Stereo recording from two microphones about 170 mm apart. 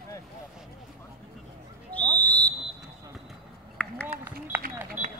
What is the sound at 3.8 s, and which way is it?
Run, 5° left (ahead or behind).